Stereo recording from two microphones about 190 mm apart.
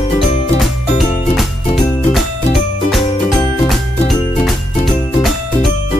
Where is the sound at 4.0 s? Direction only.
30° left (ahead or behind).